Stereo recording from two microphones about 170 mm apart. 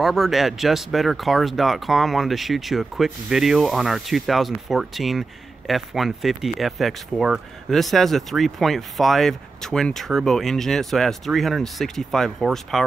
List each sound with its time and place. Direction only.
0.0 s speech: centre (ahead or behind)